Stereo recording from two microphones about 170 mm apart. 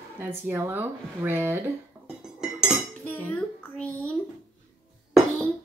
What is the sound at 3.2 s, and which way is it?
Speech, 10° left (ahead or behind).